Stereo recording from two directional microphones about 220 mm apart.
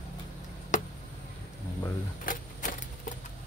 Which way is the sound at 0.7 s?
35° left (ahead or behind).